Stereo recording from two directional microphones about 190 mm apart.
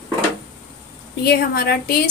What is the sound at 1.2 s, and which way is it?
Speech, 55° left (ahead or behind).